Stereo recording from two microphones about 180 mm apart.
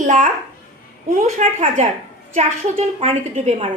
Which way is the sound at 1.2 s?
35° right (ahead or behind).